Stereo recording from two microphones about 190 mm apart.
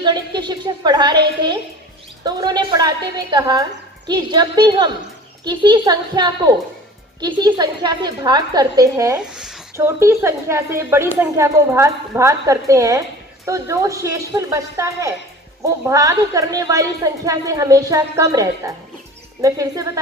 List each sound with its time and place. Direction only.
0.0 s a woman's voice: 25° right (ahead or behind)
2.2 s a woman's voice: 20° right (ahead or behind)
9.3 s speech: centre (ahead or behind)
9.7 s speech: 15° right (ahead or behind)